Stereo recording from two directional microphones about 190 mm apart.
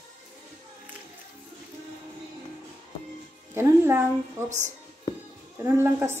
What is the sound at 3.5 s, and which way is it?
Speech, 10° right (ahead or behind).